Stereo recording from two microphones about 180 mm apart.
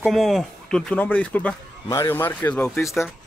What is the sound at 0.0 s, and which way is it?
Speech, centre (ahead or behind).